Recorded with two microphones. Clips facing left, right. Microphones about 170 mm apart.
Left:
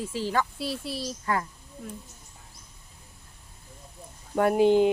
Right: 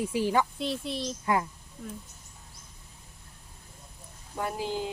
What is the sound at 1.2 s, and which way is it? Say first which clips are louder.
Speech: right 2 dB; 15° right (ahead or behind).